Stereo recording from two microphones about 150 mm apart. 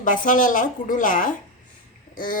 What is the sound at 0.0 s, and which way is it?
A woman's voice, 60° left (ahead or behind).